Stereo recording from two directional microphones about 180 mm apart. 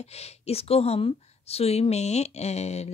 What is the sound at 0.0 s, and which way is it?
A woman's voice, 35° left (ahead or behind).